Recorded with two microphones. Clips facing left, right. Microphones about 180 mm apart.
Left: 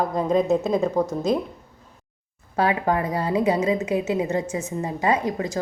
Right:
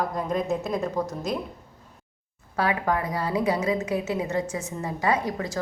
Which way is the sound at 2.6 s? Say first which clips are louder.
Left 3 dB; 25° left (ahead or behind).